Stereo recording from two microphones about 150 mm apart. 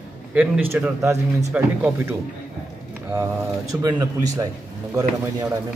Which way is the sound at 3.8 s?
25° right (ahead or behind).